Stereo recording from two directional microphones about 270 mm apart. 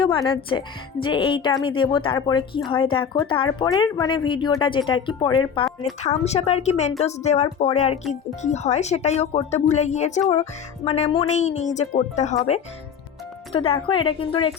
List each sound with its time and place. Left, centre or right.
0.0 s speech: centre